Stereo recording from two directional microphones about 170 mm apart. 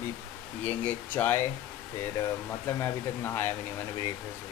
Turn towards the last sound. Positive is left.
turn(degrees=15)  # may be behind; listen again after turning